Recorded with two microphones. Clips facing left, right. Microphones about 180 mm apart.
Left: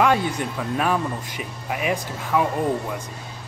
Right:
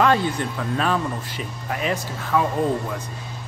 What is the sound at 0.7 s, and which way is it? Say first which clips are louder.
Speech: even; 15° left (ahead or behind).